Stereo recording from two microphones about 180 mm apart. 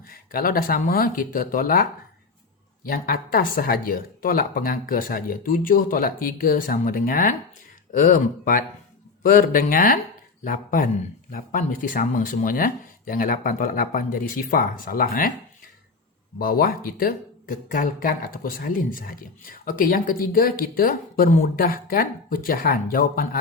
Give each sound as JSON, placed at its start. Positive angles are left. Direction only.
{"t": 0.1, "sound": "speech", "side_deg": 55}
{"t": 16.4, "sound": "speech", "side_deg": 55}